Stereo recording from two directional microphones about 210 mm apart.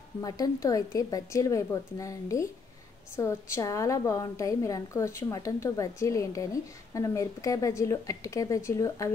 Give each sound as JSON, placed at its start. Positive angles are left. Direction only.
{"t": 0.2, "sound": "a woman's voice", "side_deg": 15}